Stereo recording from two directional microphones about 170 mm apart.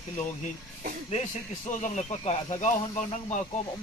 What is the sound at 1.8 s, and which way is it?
Speech, 45° left (ahead or behind).